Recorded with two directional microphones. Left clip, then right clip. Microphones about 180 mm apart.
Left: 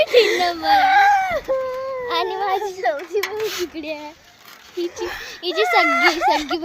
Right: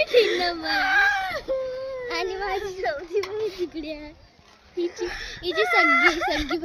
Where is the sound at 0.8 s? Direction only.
20° right (ahead or behind).